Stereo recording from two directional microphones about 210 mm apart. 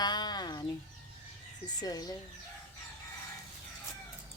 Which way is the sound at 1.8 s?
20° left (ahead or behind).